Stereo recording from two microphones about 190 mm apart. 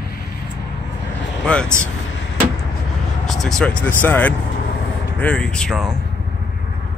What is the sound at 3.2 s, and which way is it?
Speech, centre (ahead or behind).